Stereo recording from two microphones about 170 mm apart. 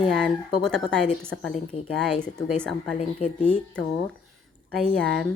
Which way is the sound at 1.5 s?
35° left (ahead or behind).